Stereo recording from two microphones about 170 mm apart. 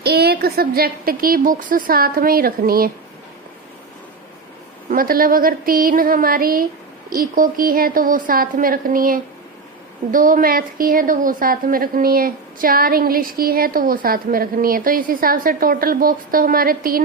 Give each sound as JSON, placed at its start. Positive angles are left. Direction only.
{"t": 0.0, "sound": "a woman's voice", "side_deg": -70}
{"t": 4.9, "sound": "a woman's voice", "side_deg": -55}